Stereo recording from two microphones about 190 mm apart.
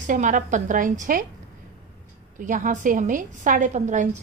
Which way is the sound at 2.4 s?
40° right (ahead or behind).